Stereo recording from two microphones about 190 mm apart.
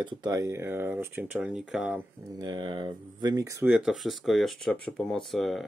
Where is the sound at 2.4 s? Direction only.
25° right (ahead or behind).